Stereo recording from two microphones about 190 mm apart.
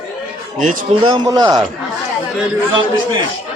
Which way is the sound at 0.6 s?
45° right (ahead or behind).